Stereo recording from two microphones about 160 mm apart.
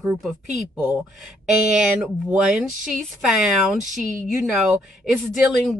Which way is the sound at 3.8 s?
55° right (ahead or behind).